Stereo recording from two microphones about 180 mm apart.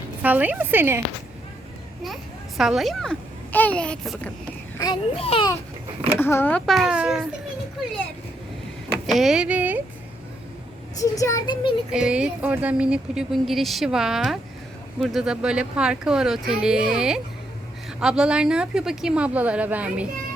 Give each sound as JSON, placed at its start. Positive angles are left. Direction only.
{"t": 0.2, "sound": "speech", "side_deg": -10}
{"t": 2.6, "sound": "speech", "side_deg": 0}
{"t": 4.8, "sound": "speech", "side_deg": 25}
{"t": 6.1, "sound": "speech", "side_deg": 10}
{"t": 8.9, "sound": "speech", "side_deg": 0}
{"t": 10.9, "sound": "speech", "side_deg": 20}
{"t": 11.9, "sound": "speech", "side_deg": -5}